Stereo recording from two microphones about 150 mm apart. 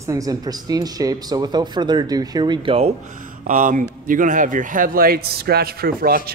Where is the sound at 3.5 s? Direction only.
60° right (ahead or behind).